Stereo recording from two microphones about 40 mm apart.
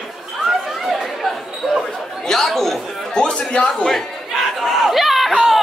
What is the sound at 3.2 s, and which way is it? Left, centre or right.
Speech, centre.